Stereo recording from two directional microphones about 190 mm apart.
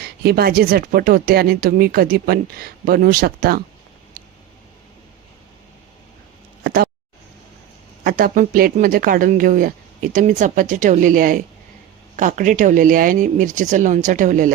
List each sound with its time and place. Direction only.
0.0 s speech: 55° right (ahead or behind)
8.0 s speech: 50° right (ahead or behind)